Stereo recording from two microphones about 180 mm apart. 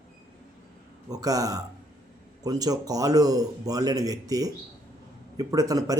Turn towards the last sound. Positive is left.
turn(degrees=-20)  # may be behind; listen again after turning